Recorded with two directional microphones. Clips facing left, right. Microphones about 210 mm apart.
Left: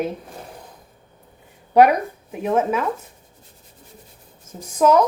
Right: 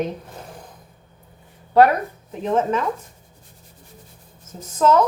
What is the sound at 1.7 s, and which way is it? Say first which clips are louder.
Speech: left 1 dB; 15° left (ahead or behind).